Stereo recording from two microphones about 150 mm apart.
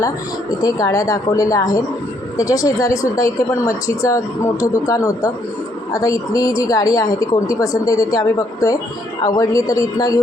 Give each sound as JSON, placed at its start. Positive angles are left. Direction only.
{"t": 0.6, "sound": "speech", "side_deg": 25}